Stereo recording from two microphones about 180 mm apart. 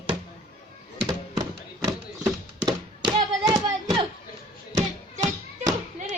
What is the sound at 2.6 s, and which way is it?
Tap, 25° right (ahead or behind).